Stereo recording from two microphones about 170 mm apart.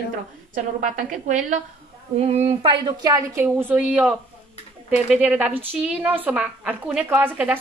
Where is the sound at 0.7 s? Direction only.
45° right (ahead or behind).